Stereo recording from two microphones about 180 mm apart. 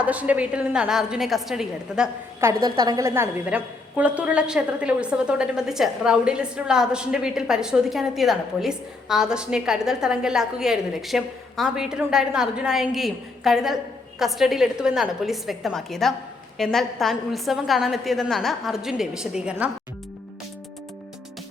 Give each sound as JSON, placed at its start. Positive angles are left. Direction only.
{"t": 0.0, "sound": "a woman's voice", "side_deg": -10}
{"t": 2.4, "sound": "a woman's voice", "side_deg": -20}